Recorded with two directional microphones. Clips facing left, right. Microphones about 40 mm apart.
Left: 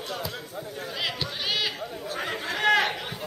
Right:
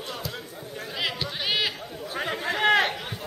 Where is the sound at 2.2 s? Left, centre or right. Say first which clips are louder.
Right 3 dB; centre.